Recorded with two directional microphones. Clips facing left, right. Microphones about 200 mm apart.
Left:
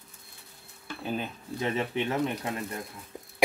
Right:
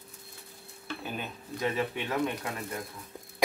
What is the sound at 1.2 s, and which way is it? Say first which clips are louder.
Speech: left 1 dB; 25° left (ahead or behind).